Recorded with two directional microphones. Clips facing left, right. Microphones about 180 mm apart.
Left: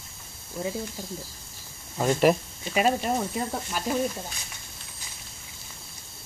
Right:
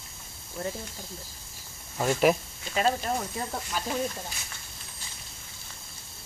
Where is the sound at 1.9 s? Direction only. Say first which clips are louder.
Left 2 dB; centre (ahead or behind).